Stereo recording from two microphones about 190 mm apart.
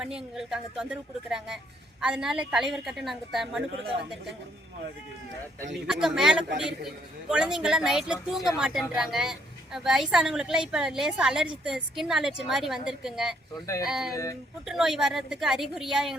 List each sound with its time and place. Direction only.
0.0 s speech: 5° right (ahead or behind)
5.9 s speech: centre (ahead or behind)
14.1 s speech: 15° left (ahead or behind)
14.7 s speech: centre (ahead or behind)